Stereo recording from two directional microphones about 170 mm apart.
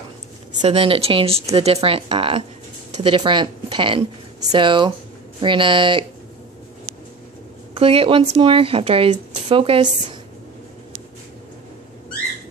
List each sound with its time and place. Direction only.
0.6 s a woman's voice: 35° right (ahead or behind)
7.7 s speech: 35° right (ahead or behind)